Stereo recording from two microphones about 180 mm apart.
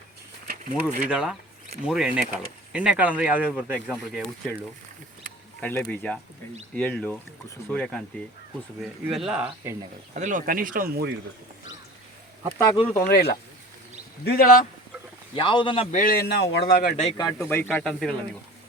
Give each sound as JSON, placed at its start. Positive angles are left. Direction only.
{"t": 0.4, "sound": "a sound", "side_deg": -50}
{"t": 1.0, "sound": "speech", "side_deg": -5}
{"t": 5.5, "sound": "speech", "side_deg": 5}
{"t": 10.2, "sound": "speech", "side_deg": -45}
{"t": 13.0, "sound": "a man's voice", "side_deg": 65}
{"t": 15.4, "sound": "speech", "side_deg": 25}
{"t": 15.9, "sound": "a man's voice", "side_deg": 50}
{"t": 17.2, "sound": "speech", "side_deg": 15}